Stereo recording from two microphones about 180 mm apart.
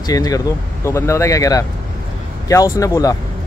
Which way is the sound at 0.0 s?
20° left (ahead or behind).